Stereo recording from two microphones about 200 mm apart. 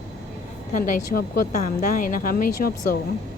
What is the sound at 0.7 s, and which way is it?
Speech, 40° left (ahead or behind).